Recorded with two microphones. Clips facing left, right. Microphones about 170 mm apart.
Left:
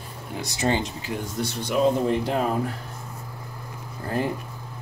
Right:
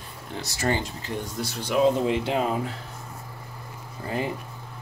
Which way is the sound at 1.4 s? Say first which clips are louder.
Even; 5° right (ahead or behind).